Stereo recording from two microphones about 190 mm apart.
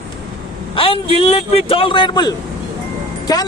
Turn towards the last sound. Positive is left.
turn(degrees=20)  # may be behind; listen again after turning